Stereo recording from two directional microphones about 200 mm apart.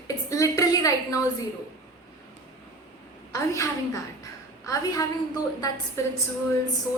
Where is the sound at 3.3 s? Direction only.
15° left (ahead or behind).